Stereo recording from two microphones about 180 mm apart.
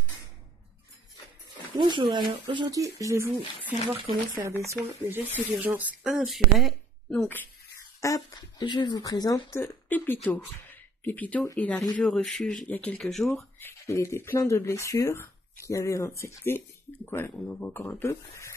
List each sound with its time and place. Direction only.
1.8 s speech: 25° right (ahead or behind); by 7.4 s 10° left (ahead or behind)
8.0 s speech: 20° left (ahead or behind)